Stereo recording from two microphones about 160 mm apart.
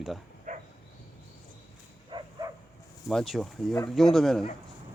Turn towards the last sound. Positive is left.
turn(degrees=0)  # may be behind; listen again after turning